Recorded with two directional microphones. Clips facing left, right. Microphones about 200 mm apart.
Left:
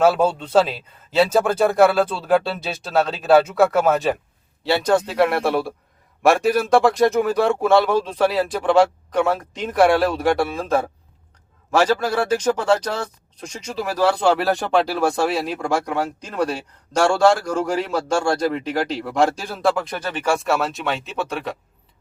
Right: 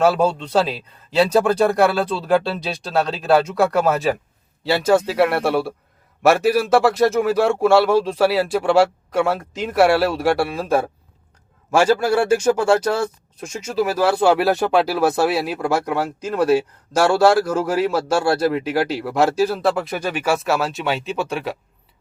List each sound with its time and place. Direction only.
0.0 s a man's voice: centre (ahead or behind)